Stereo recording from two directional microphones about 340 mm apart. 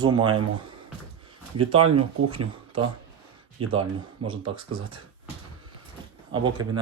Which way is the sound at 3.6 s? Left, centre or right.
Centre.